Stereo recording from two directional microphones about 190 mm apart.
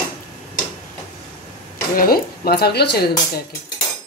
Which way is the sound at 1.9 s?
50° left (ahead or behind).